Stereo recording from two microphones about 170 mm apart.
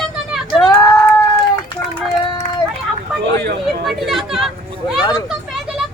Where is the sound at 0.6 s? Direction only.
25° left (ahead or behind).